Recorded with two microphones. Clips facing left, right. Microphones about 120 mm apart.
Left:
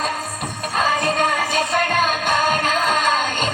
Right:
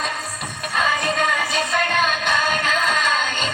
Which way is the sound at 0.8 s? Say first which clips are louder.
Left 2 dB; 40° left (ahead or behind).